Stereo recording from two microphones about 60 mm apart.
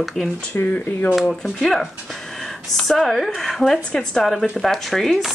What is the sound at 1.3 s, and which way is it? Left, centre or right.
Speech, centre.